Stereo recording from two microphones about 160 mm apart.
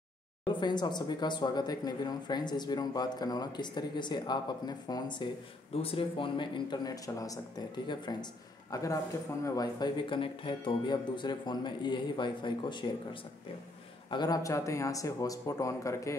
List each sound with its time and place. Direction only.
0.5 s speech: 25° left (ahead or behind)